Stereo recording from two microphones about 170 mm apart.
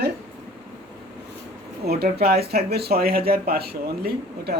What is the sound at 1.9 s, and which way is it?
Speech, 70° right (ahead or behind).